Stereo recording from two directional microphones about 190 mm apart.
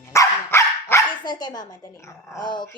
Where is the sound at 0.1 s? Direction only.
15° left (ahead or behind).